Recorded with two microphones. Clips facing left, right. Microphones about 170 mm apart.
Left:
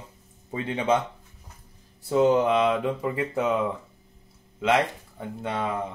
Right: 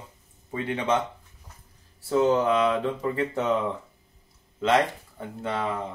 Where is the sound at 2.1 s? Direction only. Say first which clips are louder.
Left 1 dB; 15° left (ahead or behind).